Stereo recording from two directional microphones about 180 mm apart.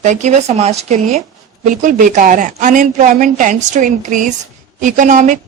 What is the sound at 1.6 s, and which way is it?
A woman's voice, 45° right (ahead or behind).